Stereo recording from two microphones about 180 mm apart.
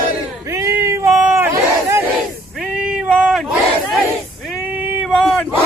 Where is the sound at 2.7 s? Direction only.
5° right (ahead or behind).